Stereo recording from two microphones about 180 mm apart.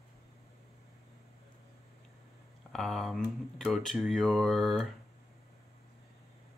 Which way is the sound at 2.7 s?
Centre (ahead or behind).